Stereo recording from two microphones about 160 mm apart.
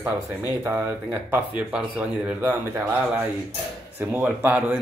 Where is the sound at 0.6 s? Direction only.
15° right (ahead or behind).